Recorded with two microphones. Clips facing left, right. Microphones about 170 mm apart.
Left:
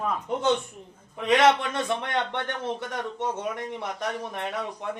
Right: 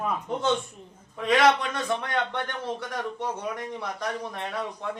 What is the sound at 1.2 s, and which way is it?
A man's voice, 25° left (ahead or behind).